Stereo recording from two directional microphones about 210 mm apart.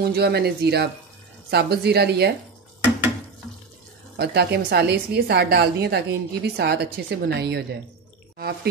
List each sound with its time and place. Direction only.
0.0 s a woman's voice: 50° right (ahead or behind)
4.2 s a woman's voice: 50° right (ahead or behind)